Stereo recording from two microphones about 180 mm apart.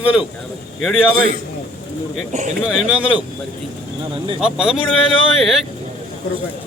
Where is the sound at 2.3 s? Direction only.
40° right (ahead or behind).